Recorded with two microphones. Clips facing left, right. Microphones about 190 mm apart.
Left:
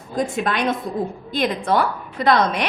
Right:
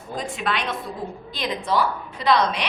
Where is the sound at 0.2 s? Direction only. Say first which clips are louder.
Left 6 dB; 45° left (ahead or behind).